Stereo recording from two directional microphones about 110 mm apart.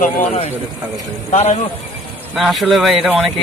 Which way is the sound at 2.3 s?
Centre (ahead or behind).